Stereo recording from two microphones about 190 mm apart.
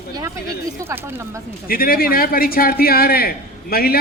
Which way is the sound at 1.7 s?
50° left (ahead or behind).